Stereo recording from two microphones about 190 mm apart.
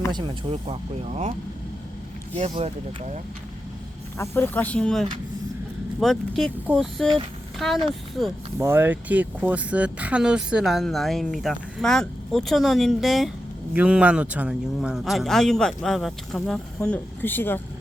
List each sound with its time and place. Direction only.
0.1 s speech: 25° right (ahead or behind)
2.3 s speech: 30° right (ahead or behind)
4.2 s speech: 10° left (ahead or behind)
8.5 s speech: 10° right (ahead or behind); by 17.6 s 10° left (ahead or behind)